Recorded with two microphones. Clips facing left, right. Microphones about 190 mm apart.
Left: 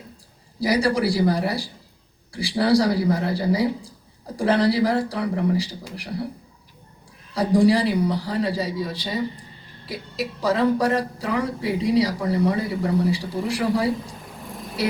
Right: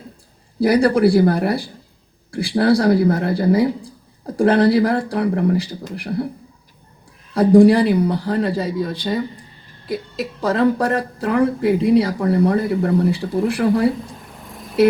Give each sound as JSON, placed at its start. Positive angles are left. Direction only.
{"t": 0.6, "sound": "speech", "side_deg": -55}
{"t": 7.3, "sound": "speech", "side_deg": -55}
{"t": 10.4, "sound": "speech", "side_deg": -55}